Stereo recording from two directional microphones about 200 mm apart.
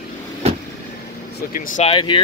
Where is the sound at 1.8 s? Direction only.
25° left (ahead or behind).